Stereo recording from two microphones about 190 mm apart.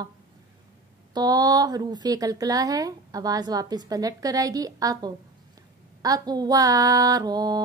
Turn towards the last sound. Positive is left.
turn(degrees=-20)  # may be behind; listen again after turning